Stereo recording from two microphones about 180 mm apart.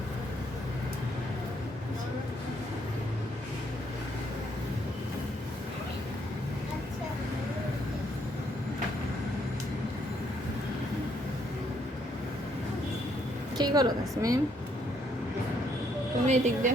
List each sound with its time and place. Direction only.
13.6 s a woman's voice: 20° right (ahead or behind)
16.2 s a woman's voice: 40° right (ahead or behind)